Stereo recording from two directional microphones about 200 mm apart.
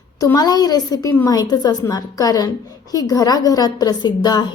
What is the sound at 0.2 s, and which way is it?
A woman's voice, 20° left (ahead or behind).